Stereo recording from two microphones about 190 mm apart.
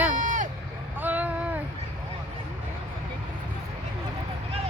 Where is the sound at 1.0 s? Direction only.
10° right (ahead or behind).